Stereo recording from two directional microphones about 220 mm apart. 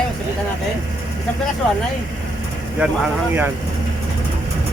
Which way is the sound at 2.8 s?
5° right (ahead or behind).